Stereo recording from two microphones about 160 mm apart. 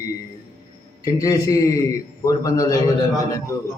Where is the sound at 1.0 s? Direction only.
20° left (ahead or behind).